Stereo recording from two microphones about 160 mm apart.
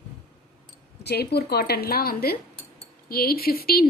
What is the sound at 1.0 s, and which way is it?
Speech, 90° left.